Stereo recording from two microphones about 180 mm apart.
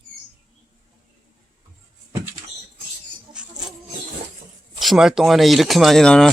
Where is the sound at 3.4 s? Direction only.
5° right (ahead or behind).